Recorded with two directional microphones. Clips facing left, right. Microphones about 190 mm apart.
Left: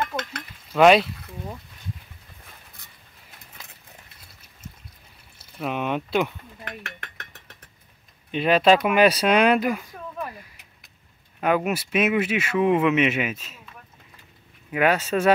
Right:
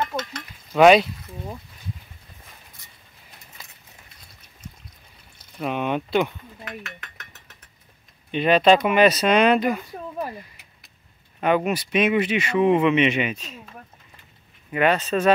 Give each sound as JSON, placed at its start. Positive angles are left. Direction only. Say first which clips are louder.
{"t": 0.1, "sound": "a sound", "louder": "right 1 dB", "side_deg": 0}
{"t": 0.7, "sound": "speech", "louder": "right 2 dB", "side_deg": 0}
{"t": 5.6, "sound": "speech", "louder": "right 2 dB", "side_deg": 0}
{"t": 6.6, "sound": "stir", "louder": "right 1 dB", "side_deg": 60}
{"t": 8.3, "sound": "speech", "louder": "right 1 dB", "side_deg": 5}
{"t": 9.9, "sound": "a sound", "louder": "right 3 dB", "side_deg": -35}
{"t": 11.4, "sound": "speech", "louder": "right 1 dB", "side_deg": 5}
{"t": 14.7, "sound": "speech", "louder": "right 1 dB", "side_deg": 5}